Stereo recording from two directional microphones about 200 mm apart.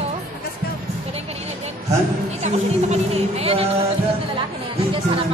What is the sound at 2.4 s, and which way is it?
Speech, 30° right (ahead or behind).